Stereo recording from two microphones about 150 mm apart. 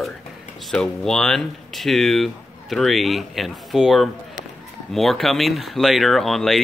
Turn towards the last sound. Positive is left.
turn(degrees=0)  # may be behind; listen again after turning